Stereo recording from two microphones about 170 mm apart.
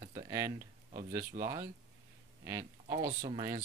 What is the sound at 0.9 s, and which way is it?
Speech, 40° right (ahead or behind).